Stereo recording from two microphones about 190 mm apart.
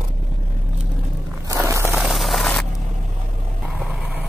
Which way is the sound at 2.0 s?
Centre (ahead or behind).